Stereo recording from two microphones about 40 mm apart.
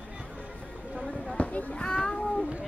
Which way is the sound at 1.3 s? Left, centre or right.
Left.